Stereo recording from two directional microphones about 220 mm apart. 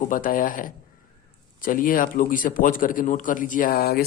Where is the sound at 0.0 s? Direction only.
40° left (ahead or behind).